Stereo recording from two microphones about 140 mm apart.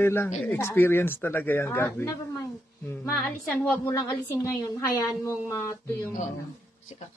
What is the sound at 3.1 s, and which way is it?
Speech, centre (ahead or behind).